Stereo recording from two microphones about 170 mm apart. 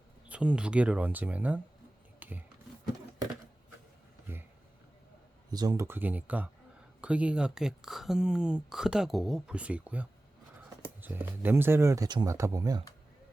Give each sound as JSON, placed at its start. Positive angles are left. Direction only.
{"t": 0.3, "sound": "speech", "side_deg": -5}
{"t": 2.1, "sound": "a sound", "side_deg": -10}
{"t": 5.5, "sound": "speech", "side_deg": -25}